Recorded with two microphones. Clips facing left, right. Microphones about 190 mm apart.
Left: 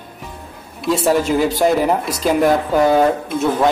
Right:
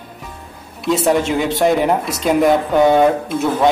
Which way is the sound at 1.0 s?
Centre (ahead or behind).